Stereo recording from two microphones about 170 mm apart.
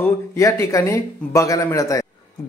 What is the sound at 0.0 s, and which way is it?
Speech, 15° left (ahead or behind).